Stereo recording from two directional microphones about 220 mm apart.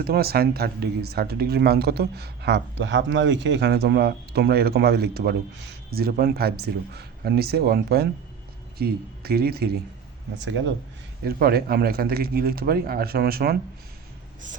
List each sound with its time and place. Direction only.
0.0 s speech: 45° right (ahead or behind)
10.4 s speech: 55° right (ahead or behind)
11.3 s speech: 45° right (ahead or behind)